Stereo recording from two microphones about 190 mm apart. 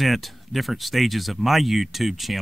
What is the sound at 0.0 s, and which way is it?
Speech, centre (ahead or behind).